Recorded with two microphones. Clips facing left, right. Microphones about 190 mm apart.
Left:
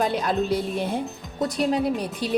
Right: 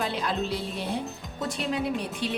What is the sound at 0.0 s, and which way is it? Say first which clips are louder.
A woman's voice: left 6 dB; 45° left (ahead or behind).